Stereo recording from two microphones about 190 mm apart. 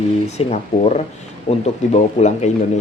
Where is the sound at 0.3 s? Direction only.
35° left (ahead or behind).